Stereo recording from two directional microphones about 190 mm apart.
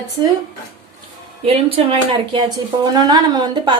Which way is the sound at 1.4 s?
30° right (ahead or behind).